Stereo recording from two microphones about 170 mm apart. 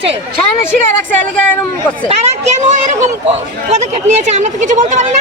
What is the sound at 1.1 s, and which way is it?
Speech, 10° left (ahead or behind).